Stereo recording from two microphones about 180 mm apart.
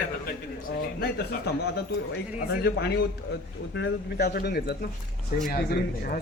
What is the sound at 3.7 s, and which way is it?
A man's voice, 70° left (ahead or behind).